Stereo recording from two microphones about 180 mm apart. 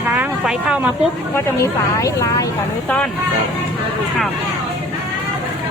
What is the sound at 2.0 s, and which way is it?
Speech, 20° left (ahead or behind).